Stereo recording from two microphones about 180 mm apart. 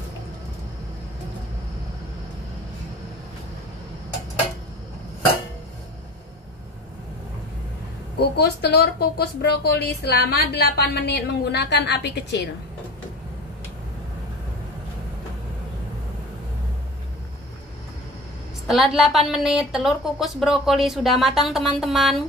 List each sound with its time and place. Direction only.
8.2 s speech: 60° left (ahead or behind)
18.7 s speech: centre (ahead or behind)